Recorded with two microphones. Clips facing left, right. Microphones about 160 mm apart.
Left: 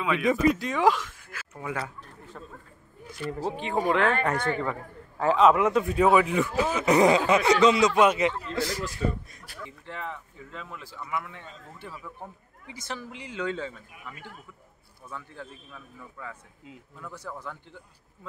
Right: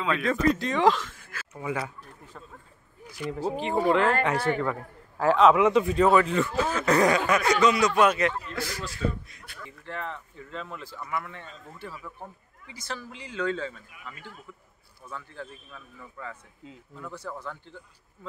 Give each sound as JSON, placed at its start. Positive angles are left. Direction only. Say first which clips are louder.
{"t": 0.0, "sound": "speech", "louder": "left 2 dB", "side_deg": 10}
{"t": 1.5, "sound": "a man's voice", "louder": "right 2 dB", "side_deg": -5}
{"t": 12.6, "sound": "speech", "louder": "even", "side_deg": 20}